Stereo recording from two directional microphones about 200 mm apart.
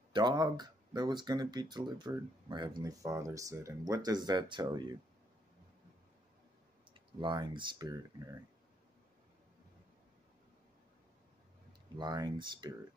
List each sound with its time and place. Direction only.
0.1 s speech: 20° right (ahead or behind)
6.9 s speech: 25° right (ahead or behind)
12.0 s speech: 20° right (ahead or behind)